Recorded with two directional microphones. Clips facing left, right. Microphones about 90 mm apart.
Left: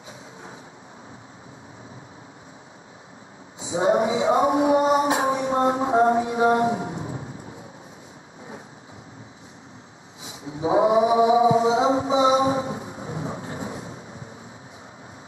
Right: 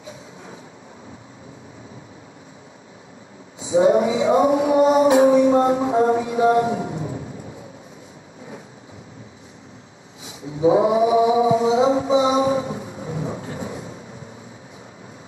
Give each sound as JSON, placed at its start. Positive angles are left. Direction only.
{"t": 3.7, "sound": "male singing", "side_deg": 30}
{"t": 10.6, "sound": "chant", "side_deg": 25}